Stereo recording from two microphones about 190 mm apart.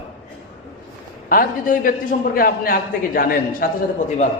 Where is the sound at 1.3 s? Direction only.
45° left (ahead or behind).